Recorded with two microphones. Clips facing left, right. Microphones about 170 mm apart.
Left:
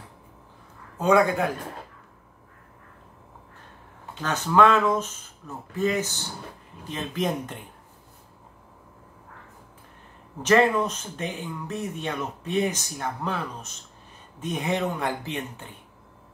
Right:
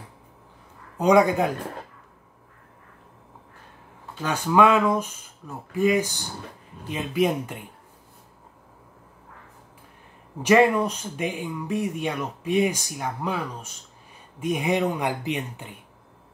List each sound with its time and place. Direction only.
0.9 s speech: 15° right (ahead or behind)
4.2 s speech: 10° right (ahead or behind)
10.4 s speech: 10° right (ahead or behind)